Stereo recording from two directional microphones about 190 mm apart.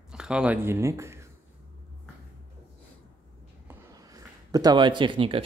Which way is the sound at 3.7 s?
20° right (ahead or behind).